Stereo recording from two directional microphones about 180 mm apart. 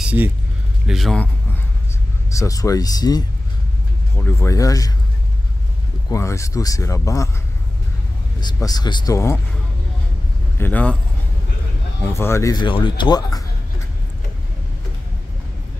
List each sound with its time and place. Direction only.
0.8 s a man's voice: centre (ahead or behind)
2.2 s speech: 20° left (ahead or behind)
6.0 s speech: 15° left (ahead or behind)
8.4 s speech: 20° left (ahead or behind)
10.6 s speech: 10° left (ahead or behind)
12.0 s speech: 15° left (ahead or behind)